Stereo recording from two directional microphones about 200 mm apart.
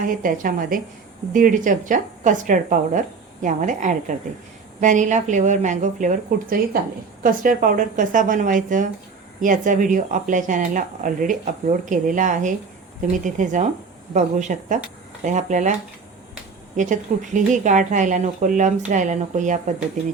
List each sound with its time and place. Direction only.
0.0 s a woman's voice: 45° right (ahead or behind)
16.7 s speech: 40° right (ahead or behind)